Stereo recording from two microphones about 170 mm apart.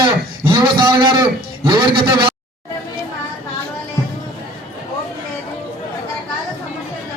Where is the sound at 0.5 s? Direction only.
25° right (ahead or behind).